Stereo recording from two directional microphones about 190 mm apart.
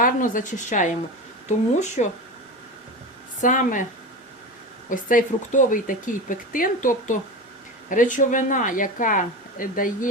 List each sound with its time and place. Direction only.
0.0 s speech: 45° left (ahead or behind)
3.4 s speech: 45° left (ahead or behind)
4.9 s speech: 45° left (ahead or behind)